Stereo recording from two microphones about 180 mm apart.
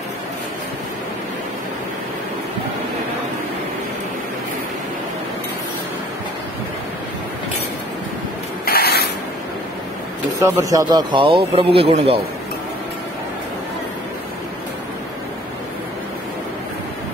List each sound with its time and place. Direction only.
8.6 s spray: 60° left (ahead or behind)
10.4 s a man's voice: 20° right (ahead or behind)